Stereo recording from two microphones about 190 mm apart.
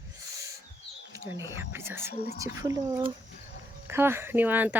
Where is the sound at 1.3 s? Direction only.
15° right (ahead or behind).